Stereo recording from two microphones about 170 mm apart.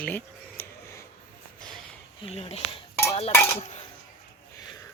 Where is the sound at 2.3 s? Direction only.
35° left (ahead or behind).